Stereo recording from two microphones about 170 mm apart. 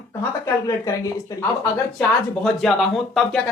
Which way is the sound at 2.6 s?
Centre (ahead or behind).